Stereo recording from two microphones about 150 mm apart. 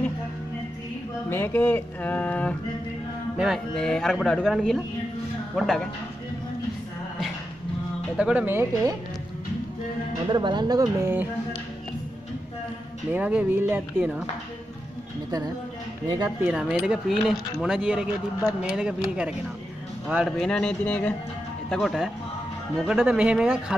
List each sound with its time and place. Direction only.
1.3 s speech: 15° left (ahead or behind)
8.2 s speech: 10° right (ahead or behind)
10.2 s speech: 30° right (ahead or behind)
13.1 s speech: 10° right (ahead or behind)
16.3 s speech: 5° right (ahead or behind)